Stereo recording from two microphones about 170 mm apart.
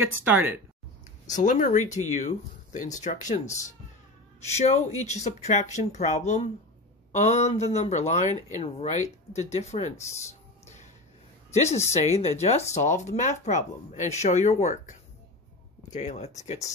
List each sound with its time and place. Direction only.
0.0 s speech: 10° right (ahead or behind)
1.3 s speech: 45° left (ahead or behind)
11.5 s a woman's voice: 40° left (ahead or behind)